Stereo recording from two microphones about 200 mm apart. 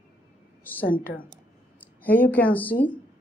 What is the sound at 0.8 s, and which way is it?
Speech, 45° left (ahead or behind).